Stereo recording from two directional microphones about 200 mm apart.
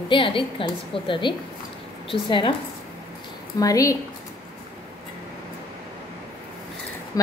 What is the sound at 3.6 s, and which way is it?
Speech, 15° left (ahead or behind).